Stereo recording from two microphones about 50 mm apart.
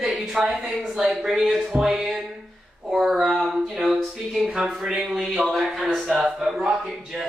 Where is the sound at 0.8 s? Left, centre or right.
Centre.